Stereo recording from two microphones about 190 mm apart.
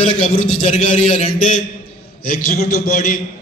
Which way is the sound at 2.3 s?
40° left (ahead or behind).